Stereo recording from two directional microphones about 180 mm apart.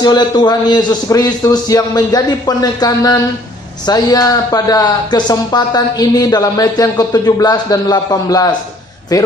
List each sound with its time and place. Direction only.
0.0 s speech: 20° left (ahead or behind)